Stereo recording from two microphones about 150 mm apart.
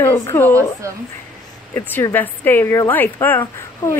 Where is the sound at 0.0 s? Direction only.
15° left (ahead or behind).